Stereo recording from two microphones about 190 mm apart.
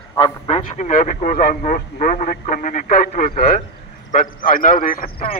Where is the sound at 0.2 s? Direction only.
35° left (ahead or behind).